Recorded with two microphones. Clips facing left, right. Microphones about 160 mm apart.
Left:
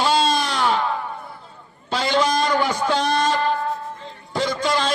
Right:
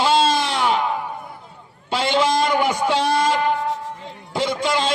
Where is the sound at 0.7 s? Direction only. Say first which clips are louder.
Right 2 dB; 15° right (ahead or behind).